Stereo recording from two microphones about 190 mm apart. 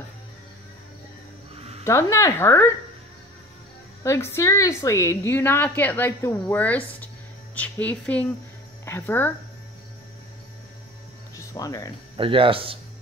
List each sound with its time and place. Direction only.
1.9 s a woman's voice: 15° left (ahead or behind)
4.0 s a woman's voice: 15° left (ahead or behind)
11.3 s speech: 20° left (ahead or behind)
12.2 s speech: 30° right (ahead or behind)